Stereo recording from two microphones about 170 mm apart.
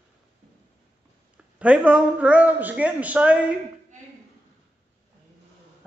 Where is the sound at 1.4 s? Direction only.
5° right (ahead or behind).